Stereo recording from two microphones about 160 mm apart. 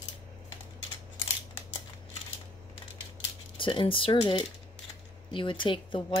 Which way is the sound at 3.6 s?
35° left (ahead or behind).